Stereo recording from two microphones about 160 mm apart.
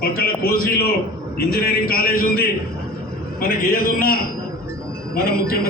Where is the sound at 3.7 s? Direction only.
65° left (ahead or behind).